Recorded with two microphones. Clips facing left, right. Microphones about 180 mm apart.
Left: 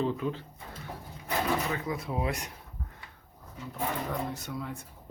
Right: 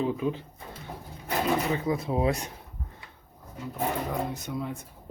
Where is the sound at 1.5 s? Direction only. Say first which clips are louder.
Right 7 dB; 25° right (ahead or behind).